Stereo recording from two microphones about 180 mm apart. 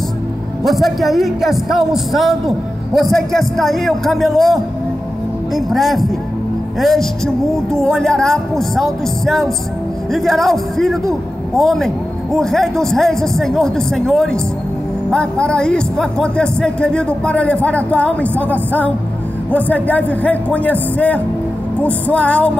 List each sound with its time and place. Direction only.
0.7 s a man's voice: centre (ahead or behind)